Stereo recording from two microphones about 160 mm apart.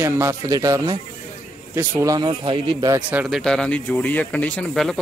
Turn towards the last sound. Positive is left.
turn(degrees=0)  # may be behind; listen again after turning